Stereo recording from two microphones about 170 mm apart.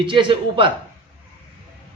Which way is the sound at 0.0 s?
30° right (ahead or behind).